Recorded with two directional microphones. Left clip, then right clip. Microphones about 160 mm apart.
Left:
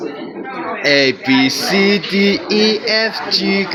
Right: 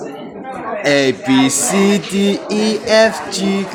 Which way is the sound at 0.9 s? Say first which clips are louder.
Left 1 dB; 15° right (ahead or behind).